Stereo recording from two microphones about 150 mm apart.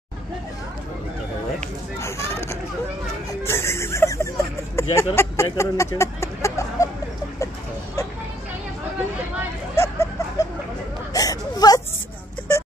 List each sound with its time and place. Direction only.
2.0 s speech: 20° left (ahead or behind)
3.4 s a sound: 15° left (ahead or behind)
4.9 s speech: 20° left (ahead or behind)
9.8 s vehicle: 20° left (ahead or behind)
11.1 s whimper: 25° left (ahead or behind)